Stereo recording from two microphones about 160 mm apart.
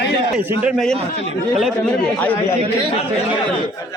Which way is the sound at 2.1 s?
10° left (ahead or behind).